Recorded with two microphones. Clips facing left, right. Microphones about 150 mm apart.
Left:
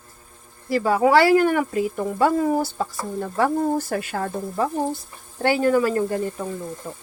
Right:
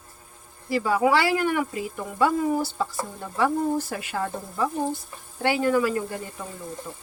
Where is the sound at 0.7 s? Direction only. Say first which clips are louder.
Left 4 dB; 40° left (ahead or behind).